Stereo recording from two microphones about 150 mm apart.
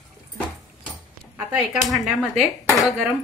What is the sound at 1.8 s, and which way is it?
Speech, centre (ahead or behind).